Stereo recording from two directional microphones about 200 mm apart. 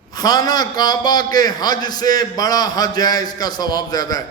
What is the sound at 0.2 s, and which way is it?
A man's voice, 20° left (ahead or behind).